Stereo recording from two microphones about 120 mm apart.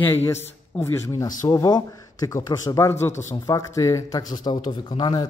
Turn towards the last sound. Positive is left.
turn(degrees=35)  # may be behind; listen again after turning